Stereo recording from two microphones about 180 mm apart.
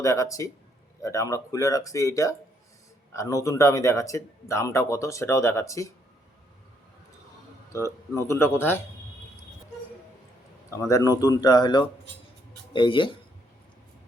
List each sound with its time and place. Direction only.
0.0 s speech: 15° left (ahead or behind)
7.7 s speech: 15° left (ahead or behind)
10.7 s speech: 15° left (ahead or behind)